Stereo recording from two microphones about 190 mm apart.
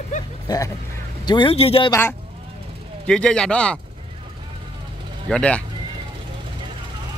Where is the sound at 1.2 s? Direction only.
25° left (ahead or behind).